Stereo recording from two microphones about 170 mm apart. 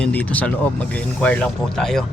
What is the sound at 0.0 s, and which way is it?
Speech, 5° left (ahead or behind).